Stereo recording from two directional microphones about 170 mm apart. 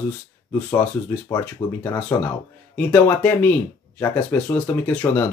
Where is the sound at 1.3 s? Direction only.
15° left (ahead or behind).